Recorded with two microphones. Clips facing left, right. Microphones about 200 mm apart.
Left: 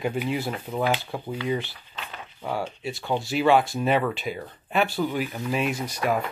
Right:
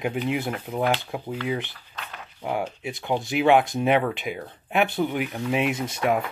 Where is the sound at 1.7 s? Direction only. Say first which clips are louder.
Even; 10° left (ahead or behind).